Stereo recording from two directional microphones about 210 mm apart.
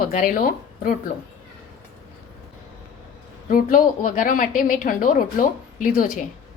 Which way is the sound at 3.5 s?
40° left (ahead or behind).